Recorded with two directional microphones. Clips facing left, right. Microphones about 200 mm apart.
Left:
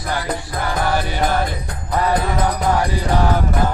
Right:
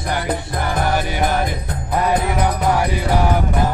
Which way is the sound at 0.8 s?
15° right (ahead or behind).